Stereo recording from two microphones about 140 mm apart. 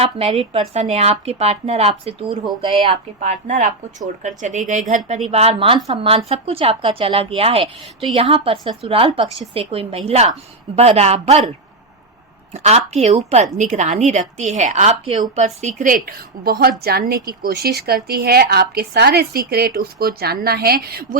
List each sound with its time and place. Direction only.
0.0 s speech: 45° right (ahead or behind)
3.2 s speech: 60° right (ahead or behind)
12.5 s a woman's voice: 50° right (ahead or behind)
16.0 s a woman's voice: 90° right